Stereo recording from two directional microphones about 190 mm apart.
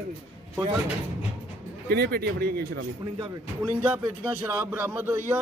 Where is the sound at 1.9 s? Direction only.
55° right (ahead or behind).